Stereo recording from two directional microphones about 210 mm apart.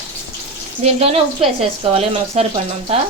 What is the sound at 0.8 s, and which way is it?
Speech, 30° right (ahead or behind).